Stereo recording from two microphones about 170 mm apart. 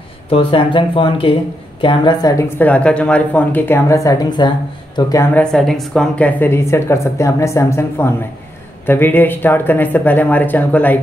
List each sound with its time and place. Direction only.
0.3 s a woman's voice: 30° left (ahead or behind)
2.6 s speech: 5° left (ahead or behind); by 5.2 s 25° left (ahead or behind)
5.3 s speech: 5° left (ahead or behind)